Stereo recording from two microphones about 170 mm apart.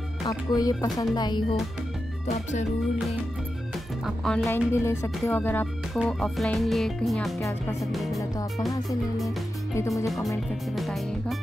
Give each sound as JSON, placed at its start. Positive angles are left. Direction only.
{"t": 0.3, "sound": "speech", "side_deg": 20}
{"t": 4.0, "sound": "speech", "side_deg": 0}
{"t": 4.5, "sound": "speech", "side_deg": 15}
{"t": 8.2, "sound": "speech", "side_deg": 20}
{"t": 9.8, "sound": "speech", "side_deg": 20}
{"t": 10.0, "sound": "speech", "side_deg": 0}